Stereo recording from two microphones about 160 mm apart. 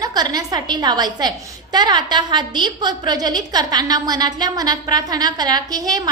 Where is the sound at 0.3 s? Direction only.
25° right (ahead or behind).